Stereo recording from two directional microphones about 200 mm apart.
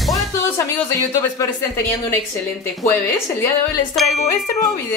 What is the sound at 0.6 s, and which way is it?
Speech, 15° left (ahead or behind).